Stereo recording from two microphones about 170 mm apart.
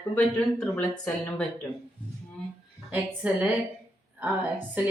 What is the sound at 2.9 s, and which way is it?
A woman's voice, 10° right (ahead or behind).